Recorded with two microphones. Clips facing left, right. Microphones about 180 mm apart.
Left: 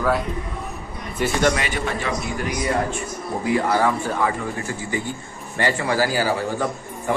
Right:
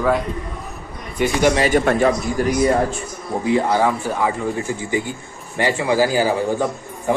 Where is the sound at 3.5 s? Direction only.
20° right (ahead or behind).